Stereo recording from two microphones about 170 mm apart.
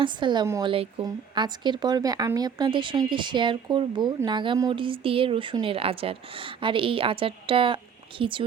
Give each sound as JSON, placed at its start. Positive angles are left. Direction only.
{"t": 0.0, "sound": "speech", "side_deg": -25}